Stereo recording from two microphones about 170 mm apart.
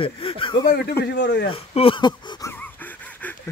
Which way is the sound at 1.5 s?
35° left (ahead or behind).